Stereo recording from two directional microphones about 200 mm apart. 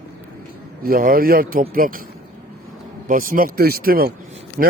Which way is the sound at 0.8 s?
45° right (ahead or behind).